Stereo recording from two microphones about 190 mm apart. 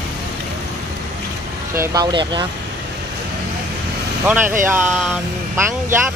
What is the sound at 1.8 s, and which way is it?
Speech, 20° right (ahead or behind).